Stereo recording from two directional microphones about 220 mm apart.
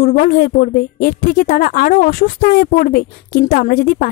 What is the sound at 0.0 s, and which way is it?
A woman's voice, 40° left (ahead or behind).